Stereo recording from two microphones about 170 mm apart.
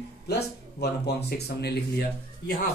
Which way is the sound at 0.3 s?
70° left (ahead or behind).